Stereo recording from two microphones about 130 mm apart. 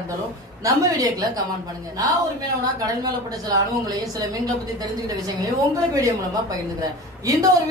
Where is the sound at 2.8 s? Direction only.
30° right (ahead or behind).